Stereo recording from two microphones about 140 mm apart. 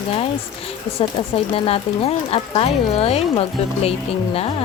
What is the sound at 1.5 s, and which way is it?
A woman's voice, 45° left (ahead or behind).